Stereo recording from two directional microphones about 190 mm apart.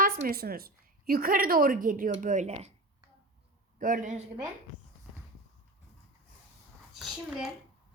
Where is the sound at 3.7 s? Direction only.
45° right (ahead or behind).